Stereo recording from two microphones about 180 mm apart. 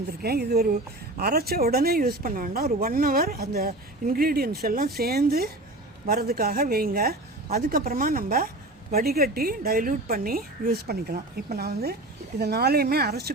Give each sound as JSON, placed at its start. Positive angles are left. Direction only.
{"t": 0.2, "sound": "speech", "side_deg": -60}